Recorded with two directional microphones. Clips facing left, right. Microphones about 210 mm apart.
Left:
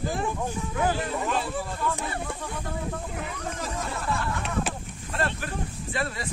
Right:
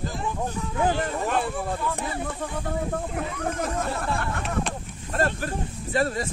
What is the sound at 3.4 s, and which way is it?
Speech, 55° right (ahead or behind).